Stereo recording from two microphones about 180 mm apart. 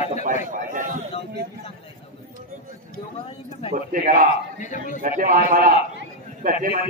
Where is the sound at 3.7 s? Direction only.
50° right (ahead or behind).